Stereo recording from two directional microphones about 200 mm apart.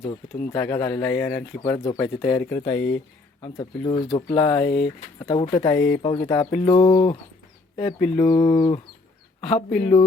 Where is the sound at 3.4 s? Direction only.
20° left (ahead or behind).